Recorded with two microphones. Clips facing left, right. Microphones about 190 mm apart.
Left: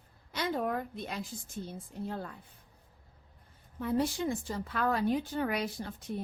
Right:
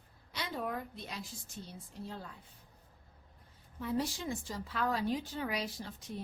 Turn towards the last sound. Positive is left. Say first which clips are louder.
# left 5 dB
turn(degrees=55)  # may be behind; listen again after turning